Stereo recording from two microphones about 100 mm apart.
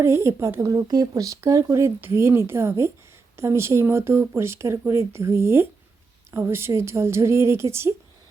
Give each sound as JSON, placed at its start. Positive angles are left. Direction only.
{"t": 0.0, "sound": "speech", "side_deg": -25}